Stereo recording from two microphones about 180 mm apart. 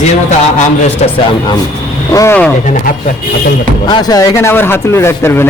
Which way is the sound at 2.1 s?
10° left (ahead or behind).